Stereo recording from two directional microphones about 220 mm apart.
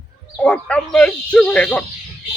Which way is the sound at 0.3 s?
5° left (ahead or behind).